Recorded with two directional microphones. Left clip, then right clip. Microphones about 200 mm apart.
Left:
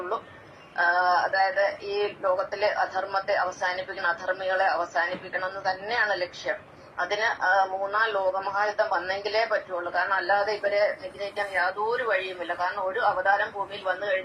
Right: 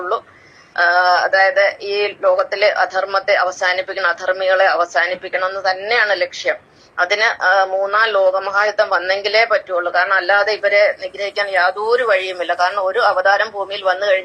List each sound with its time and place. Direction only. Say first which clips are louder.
0.8 s a man's voice: right 9 dB; 55° right (ahead or behind)